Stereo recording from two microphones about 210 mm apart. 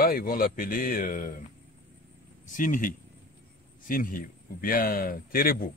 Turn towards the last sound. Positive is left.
turn(degrees=45)  # may be behind; listen again after turning